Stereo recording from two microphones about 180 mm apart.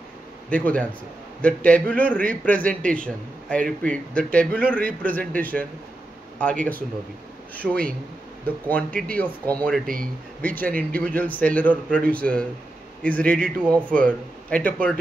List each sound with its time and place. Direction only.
0.5 s a man's voice: 10° left (ahead or behind)
10.7 s a man's voice: 50° right (ahead or behind)
11.1 s a man's voice: 10° left (ahead or behind)